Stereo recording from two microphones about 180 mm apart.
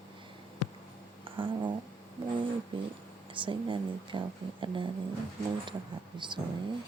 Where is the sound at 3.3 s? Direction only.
30° right (ahead or behind).